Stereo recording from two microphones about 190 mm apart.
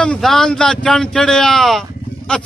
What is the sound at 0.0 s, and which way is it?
A man's voice, 5° left (ahead or behind).